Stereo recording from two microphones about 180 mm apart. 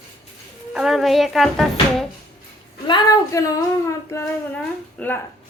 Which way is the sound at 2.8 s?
25° left (ahead or behind).